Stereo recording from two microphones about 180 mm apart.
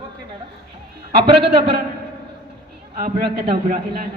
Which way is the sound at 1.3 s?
65° right (ahead or behind).